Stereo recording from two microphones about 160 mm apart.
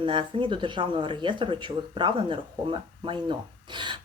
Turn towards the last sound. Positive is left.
turn(degrees=-30)  # may be behind; listen again after turning